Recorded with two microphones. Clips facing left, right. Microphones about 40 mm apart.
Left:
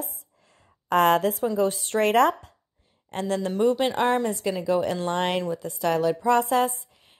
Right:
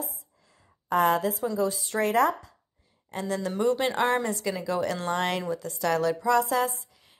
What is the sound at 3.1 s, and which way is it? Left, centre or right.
Speech, left.